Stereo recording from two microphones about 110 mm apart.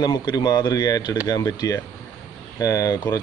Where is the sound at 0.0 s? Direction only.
40° left (ahead or behind).